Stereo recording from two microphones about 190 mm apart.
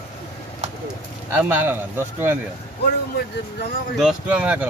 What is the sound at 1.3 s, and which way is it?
Speech, 10° right (ahead or behind).